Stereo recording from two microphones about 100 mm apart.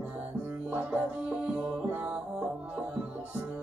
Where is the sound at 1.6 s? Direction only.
15° right (ahead or behind).